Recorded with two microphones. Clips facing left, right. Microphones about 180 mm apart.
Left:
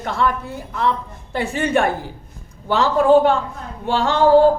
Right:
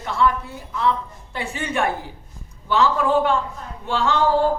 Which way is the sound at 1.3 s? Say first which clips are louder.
Left 6 dB; 40° left (ahead or behind).